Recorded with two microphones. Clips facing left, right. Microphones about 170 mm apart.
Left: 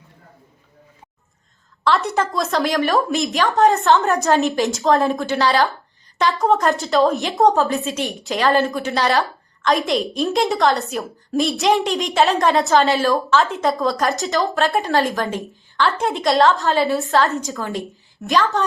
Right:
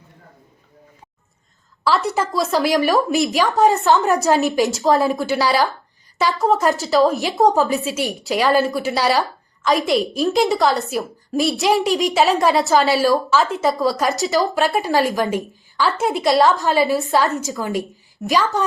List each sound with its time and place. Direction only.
1.8 s a woman's voice: centre (ahead or behind)
16.5 s speech: 15° right (ahead or behind)
16.8 s a woman's voice: centre (ahead or behind)
17.1 s speech: 15° right (ahead or behind)
17.3 s a woman's voice: centre (ahead or behind)